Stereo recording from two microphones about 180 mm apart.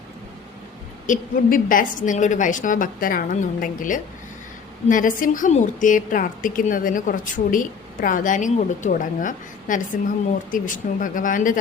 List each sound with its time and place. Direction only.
1.0 s a woman's voice: 50° left (ahead or behind)